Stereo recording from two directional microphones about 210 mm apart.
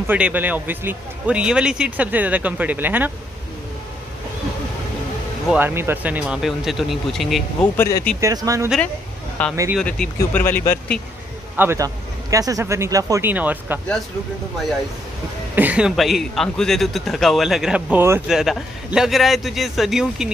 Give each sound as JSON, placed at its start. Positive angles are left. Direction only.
{"t": 0.0, "sound": "speech", "side_deg": -10}
{"t": 5.5, "sound": "speech", "side_deg": -10}
{"t": 7.7, "sound": "speech", "side_deg": 10}
{"t": 8.2, "sound": "speech", "side_deg": -15}
{"t": 9.4, "sound": "speech", "side_deg": 5}
{"t": 11.5, "sound": "speech", "side_deg": -10}
{"t": 15.5, "sound": "speech", "side_deg": -5}